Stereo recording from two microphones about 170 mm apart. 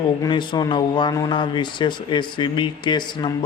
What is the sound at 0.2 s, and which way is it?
A man's voice, 25° left (ahead or behind).